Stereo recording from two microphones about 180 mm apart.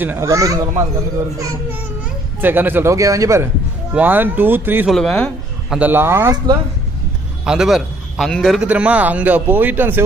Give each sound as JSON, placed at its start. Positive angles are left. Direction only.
{"t": 0.0, "sound": "a man's voice", "side_deg": -15}
{"t": 2.4, "sound": "a man's voice", "side_deg": -10}
{"t": 4.9, "sound": "a man's voice", "side_deg": 5}
{"t": 5.8, "sound": "a man's voice", "side_deg": -10}
{"t": 7.4, "sound": "a man's voice", "side_deg": -5}